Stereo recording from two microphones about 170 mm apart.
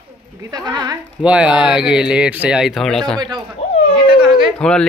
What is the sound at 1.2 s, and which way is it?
Speech, 5° right (ahead or behind).